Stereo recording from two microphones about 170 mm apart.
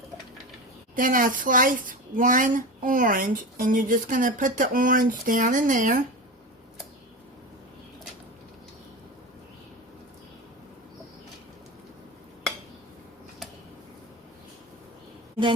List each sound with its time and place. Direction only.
0.9 s speech: 55° right (ahead or behind)